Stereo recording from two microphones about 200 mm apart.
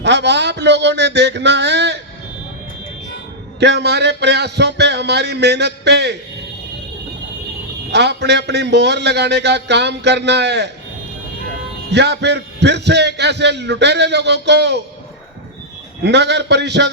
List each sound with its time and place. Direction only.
0.0 s speech: 60° right (ahead or behind)
3.6 s a man's voice: 55° right (ahead or behind)
7.9 s a man's voice: 60° right (ahead or behind)
11.9 s a man's voice: 60° right (ahead or behind)
16.0 s a man's voice: 60° right (ahead or behind)